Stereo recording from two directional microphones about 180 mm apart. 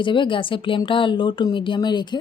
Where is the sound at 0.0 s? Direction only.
25° left (ahead or behind).